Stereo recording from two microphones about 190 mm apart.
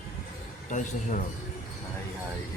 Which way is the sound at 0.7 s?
40° left (ahead or behind).